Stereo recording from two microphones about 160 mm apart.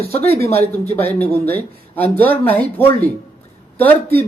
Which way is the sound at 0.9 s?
10° left (ahead or behind).